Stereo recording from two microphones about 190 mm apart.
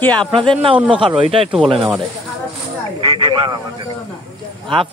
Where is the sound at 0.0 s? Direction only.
5° left (ahead or behind).